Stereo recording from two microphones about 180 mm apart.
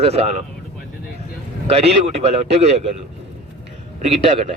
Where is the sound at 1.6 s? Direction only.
35° right (ahead or behind).